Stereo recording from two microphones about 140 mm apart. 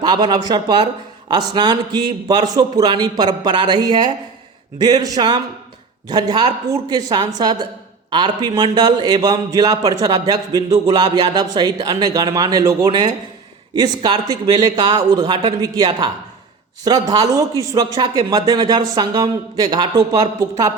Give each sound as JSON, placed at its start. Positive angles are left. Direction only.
{"t": 0.0, "sound": "a man's voice", "side_deg": -30}